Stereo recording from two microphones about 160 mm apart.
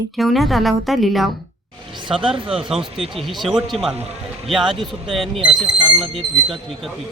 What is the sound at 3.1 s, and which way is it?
Speech, centre (ahead or behind).